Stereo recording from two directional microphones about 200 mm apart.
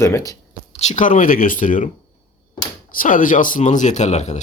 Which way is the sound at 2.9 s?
45° left (ahead or behind).